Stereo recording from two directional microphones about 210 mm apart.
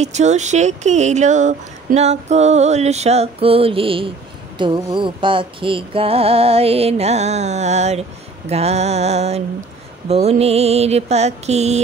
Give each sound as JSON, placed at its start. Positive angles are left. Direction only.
{"t": 0.0, "sound": "speech", "side_deg": -35}
{"t": 4.6, "sound": "music", "side_deg": -25}
{"t": 8.5, "sound": "speech", "side_deg": -30}